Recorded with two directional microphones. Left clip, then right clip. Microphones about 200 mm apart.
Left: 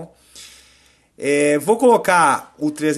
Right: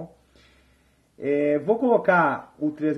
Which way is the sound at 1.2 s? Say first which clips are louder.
Left 6 dB; 40° left (ahead or behind).